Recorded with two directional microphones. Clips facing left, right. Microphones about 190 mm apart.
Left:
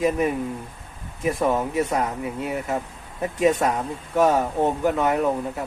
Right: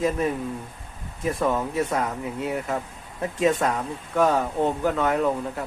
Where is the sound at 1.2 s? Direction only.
15° left (ahead or behind).